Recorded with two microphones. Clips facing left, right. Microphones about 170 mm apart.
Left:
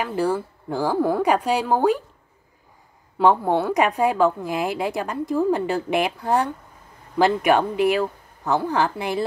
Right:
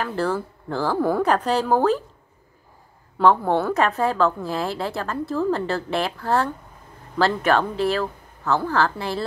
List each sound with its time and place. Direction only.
0.0 s a woman's voice: 10° left (ahead or behind)
3.2 s a woman's voice: 15° left (ahead or behind)